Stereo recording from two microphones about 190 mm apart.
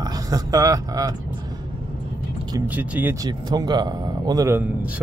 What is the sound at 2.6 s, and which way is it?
Speech, 10° right (ahead or behind).